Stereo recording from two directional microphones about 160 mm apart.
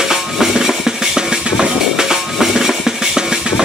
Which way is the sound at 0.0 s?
5° right (ahead or behind).